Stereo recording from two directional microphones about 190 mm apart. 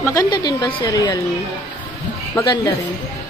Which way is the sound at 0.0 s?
20° left (ahead or behind).